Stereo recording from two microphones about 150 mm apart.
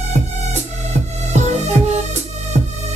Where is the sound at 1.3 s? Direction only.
50° right (ahead or behind).